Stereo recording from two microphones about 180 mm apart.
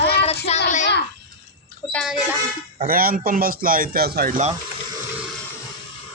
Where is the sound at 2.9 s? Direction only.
55° right (ahead or behind).